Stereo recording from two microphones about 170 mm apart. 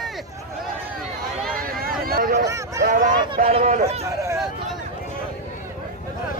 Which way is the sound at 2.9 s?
50° right (ahead or behind).